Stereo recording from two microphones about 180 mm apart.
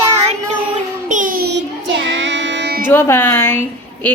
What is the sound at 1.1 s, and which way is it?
Child singing, 50° right (ahead or behind).